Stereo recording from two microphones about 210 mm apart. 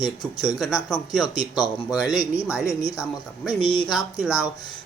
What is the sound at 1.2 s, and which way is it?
Speech, 20° left (ahead or behind).